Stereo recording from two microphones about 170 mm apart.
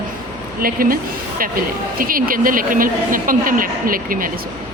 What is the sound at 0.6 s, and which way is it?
Speech, 60° right (ahead or behind).